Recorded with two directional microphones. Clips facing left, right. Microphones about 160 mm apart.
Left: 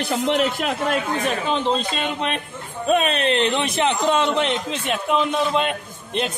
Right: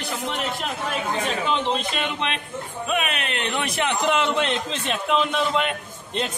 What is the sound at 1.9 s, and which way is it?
A man's voice, 35° left (ahead or behind).